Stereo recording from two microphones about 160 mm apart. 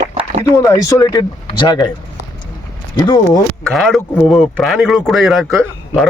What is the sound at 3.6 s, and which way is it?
Speech, centre (ahead or behind).